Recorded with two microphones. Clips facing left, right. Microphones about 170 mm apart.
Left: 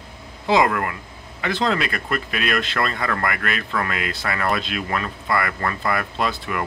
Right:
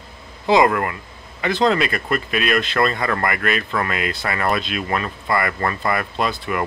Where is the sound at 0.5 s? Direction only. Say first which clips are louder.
Right 3 dB; 15° right (ahead or behind).